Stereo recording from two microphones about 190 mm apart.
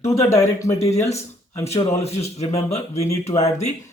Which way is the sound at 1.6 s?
35° left (ahead or behind).